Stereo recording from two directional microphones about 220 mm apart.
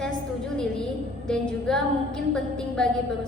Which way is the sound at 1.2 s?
5° left (ahead or behind).